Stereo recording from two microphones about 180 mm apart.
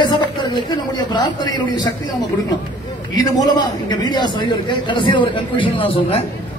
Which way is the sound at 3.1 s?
20° left (ahead or behind).